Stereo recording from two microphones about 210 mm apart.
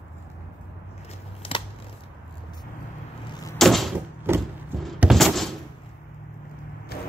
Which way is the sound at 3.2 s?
20° left (ahead or behind).